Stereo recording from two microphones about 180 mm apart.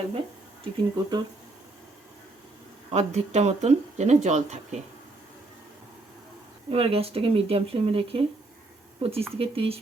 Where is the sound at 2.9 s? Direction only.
40° right (ahead or behind).